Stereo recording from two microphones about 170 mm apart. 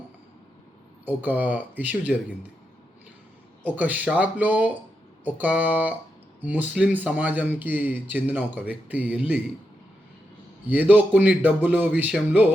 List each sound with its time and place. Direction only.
1.0 s speech: 10° right (ahead or behind)
3.8 s speech: 10° right (ahead or behind)
10.7 s speech: 10° right (ahead or behind)